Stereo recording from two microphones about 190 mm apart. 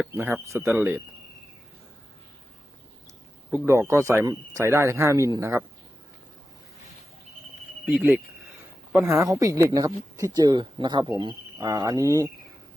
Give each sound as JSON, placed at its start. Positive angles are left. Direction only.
{"t": 0.0, "sound": "a man's voice", "side_deg": -10}
{"t": 3.5, "sound": "speech", "side_deg": -15}
{"t": 7.9, "sound": "speech", "side_deg": -5}